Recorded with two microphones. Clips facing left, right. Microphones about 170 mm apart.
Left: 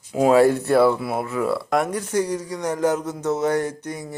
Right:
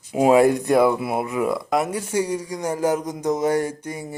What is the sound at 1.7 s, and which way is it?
Speech, 5° right (ahead or behind).